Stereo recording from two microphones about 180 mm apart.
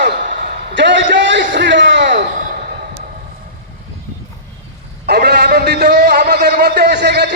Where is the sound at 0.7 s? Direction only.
90° right.